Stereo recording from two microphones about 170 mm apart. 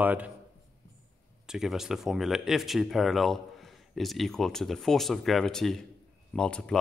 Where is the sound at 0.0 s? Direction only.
10° right (ahead or behind).